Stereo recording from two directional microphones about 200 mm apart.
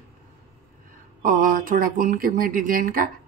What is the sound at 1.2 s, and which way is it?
Speech, 45° right (ahead or behind).